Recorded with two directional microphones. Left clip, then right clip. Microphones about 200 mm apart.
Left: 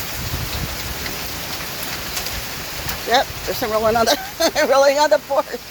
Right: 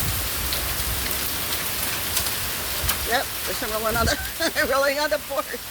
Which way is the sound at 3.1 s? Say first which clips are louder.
Left 10 dB; 20° left (ahead or behind).